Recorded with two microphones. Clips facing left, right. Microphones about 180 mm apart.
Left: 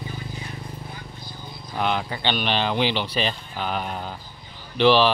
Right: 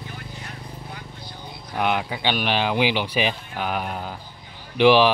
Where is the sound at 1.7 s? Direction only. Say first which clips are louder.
Right 1 dB; 10° right (ahead or behind).